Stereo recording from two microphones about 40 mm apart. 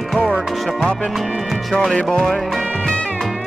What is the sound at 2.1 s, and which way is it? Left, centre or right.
Music, centre.